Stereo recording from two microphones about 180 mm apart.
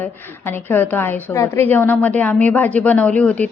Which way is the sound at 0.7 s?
10° left (ahead or behind).